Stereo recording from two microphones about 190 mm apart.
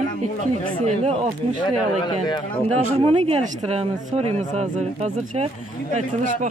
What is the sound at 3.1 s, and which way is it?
A man's voice, 30° right (ahead or behind).